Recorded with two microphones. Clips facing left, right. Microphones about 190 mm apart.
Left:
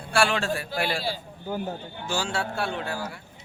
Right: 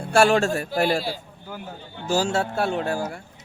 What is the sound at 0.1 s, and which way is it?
A man's voice, 45° right (ahead or behind).